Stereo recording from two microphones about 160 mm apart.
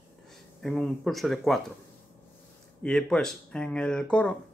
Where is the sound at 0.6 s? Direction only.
Centre (ahead or behind).